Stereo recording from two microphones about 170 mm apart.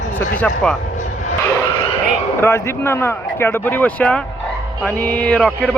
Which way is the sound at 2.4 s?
15° left (ahead or behind).